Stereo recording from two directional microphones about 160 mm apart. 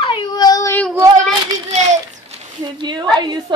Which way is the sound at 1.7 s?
40° right (ahead or behind).